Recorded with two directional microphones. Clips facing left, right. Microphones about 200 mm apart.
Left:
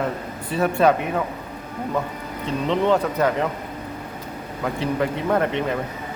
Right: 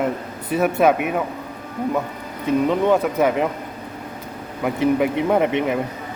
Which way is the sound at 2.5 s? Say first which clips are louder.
Right 3 dB; 10° right (ahead or behind).